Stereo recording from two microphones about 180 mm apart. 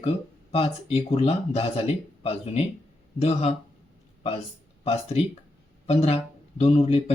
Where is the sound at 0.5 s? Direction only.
35° left (ahead or behind).